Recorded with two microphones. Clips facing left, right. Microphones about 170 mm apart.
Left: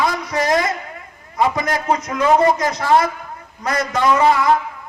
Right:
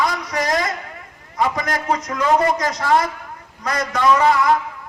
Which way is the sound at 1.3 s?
25° left (ahead or behind).